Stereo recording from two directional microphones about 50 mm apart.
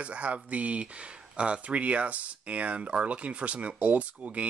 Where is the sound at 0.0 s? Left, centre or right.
Right.